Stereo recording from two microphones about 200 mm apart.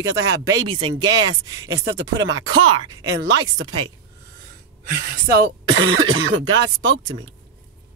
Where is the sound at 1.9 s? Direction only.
65° right (ahead or behind).